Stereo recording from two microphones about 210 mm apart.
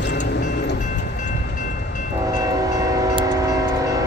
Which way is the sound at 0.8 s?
35° left (ahead or behind).